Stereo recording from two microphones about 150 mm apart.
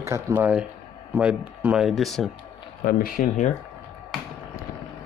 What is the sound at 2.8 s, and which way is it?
Speech, 70° left (ahead or behind).